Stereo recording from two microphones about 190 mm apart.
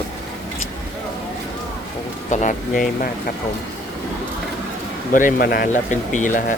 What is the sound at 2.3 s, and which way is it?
Speech, 40° left (ahead or behind).